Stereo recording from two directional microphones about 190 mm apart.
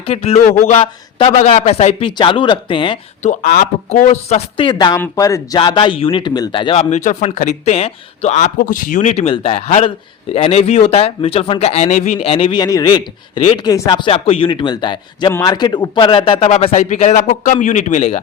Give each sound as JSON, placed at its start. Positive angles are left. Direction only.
{"t": 0.0, "sound": "a man's voice", "side_deg": 30}
{"t": 3.2, "sound": "a man's voice", "side_deg": 45}
{"t": 6.9, "sound": "a man's voice", "side_deg": 40}